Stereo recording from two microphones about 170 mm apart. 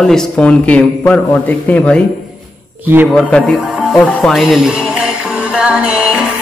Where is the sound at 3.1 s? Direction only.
5° left (ahead or behind).